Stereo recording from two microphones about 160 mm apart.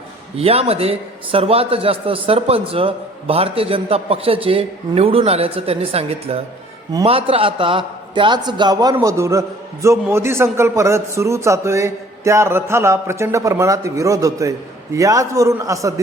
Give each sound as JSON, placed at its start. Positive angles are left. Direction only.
{"t": 0.3, "sound": "a man's voice", "side_deg": -40}